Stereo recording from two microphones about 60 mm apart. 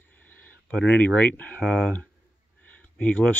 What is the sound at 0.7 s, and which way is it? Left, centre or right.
Speech, left.